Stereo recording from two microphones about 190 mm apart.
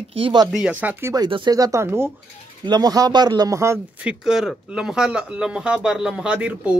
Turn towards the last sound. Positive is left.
turn(degrees=-5)  # may be behind; listen again after turning